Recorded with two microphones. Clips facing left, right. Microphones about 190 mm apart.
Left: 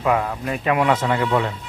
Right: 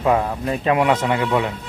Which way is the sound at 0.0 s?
25° right (ahead or behind).